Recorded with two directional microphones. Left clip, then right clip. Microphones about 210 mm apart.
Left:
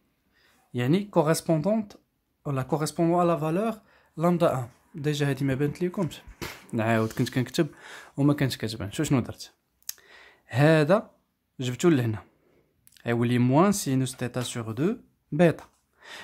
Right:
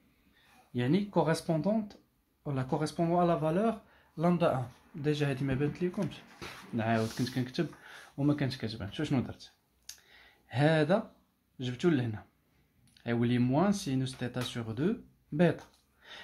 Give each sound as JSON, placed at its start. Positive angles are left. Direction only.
{"t": 0.7, "sound": "speech", "side_deg": 45}